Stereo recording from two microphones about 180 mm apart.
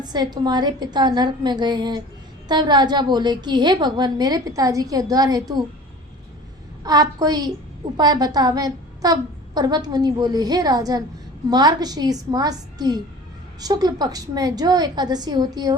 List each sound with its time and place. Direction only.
0.0 s a woman's voice: 25° right (ahead or behind)
6.8 s a woman's voice: 20° right (ahead or behind)